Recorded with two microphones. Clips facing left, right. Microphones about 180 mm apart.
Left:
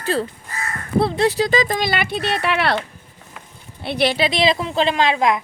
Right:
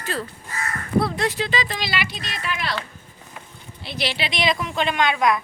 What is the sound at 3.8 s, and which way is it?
Speech, 60° left (ahead or behind).